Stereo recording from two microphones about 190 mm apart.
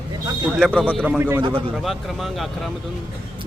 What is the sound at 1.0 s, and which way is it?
Speech, 10° right (ahead or behind).